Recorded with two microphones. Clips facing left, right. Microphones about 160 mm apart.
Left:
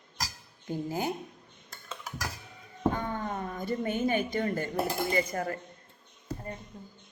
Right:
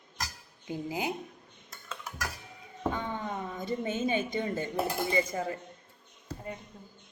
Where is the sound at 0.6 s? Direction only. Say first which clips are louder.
Left 2 dB; 15° right (ahead or behind).